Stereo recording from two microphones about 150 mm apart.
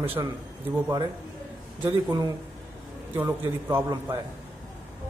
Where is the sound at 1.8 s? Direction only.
30° right (ahead or behind).